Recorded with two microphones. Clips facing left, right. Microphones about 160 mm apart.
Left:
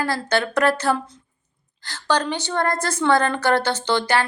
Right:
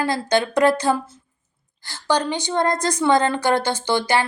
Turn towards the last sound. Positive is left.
turn(degrees=-10)  # may be behind; listen again after turning